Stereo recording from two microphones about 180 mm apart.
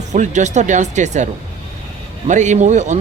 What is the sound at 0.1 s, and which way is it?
Speech, 40° right (ahead or behind).